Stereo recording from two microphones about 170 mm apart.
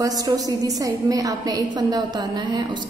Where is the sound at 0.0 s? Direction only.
20° right (ahead or behind).